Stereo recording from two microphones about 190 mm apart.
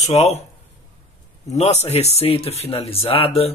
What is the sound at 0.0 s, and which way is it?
Speech, 35° left (ahead or behind).